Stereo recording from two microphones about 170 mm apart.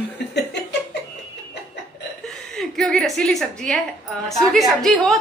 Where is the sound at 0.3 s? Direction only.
80° left.